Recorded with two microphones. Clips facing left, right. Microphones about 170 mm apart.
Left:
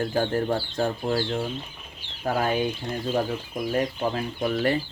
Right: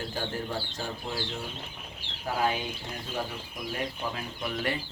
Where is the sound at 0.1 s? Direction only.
55° left (ahead or behind).